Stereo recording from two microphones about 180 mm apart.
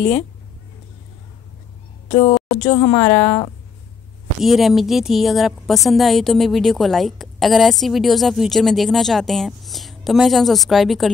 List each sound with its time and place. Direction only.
2.0 s a woman's voice: 35° left (ahead or behind)
3.1 s a woman's voice: 10° left (ahead or behind)
4.4 s a woman's voice: centre (ahead or behind)